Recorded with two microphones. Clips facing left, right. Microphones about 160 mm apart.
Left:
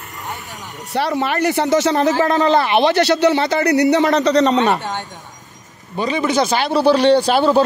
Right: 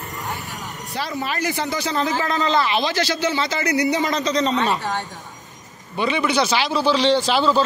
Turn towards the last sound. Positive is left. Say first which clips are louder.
# left 5 dB
turn(degrees=55)  # may be behind; listen again after turning